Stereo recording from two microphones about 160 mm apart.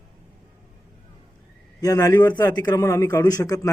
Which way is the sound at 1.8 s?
20° left (ahead or behind).